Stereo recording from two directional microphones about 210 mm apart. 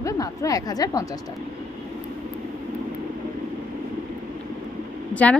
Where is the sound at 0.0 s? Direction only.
15° left (ahead or behind).